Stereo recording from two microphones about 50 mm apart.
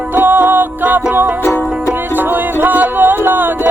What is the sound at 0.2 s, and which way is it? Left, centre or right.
Music, right.